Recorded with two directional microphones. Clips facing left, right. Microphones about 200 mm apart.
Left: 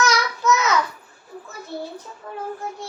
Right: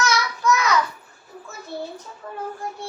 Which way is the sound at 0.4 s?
20° left (ahead or behind).